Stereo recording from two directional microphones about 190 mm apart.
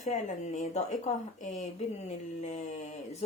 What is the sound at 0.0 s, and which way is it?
Speech, 40° left (ahead or behind).